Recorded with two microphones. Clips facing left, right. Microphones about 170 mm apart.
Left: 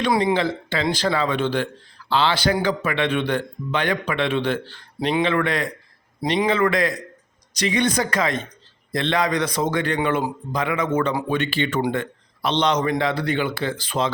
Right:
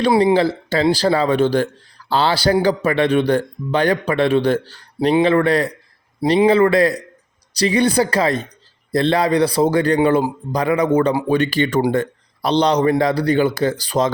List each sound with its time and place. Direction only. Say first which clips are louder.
0.0 s speech: right 6 dB; 30° right (ahead or behind)